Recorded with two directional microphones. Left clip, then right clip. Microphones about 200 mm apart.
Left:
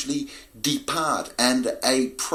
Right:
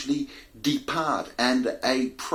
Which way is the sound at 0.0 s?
40° left (ahead or behind).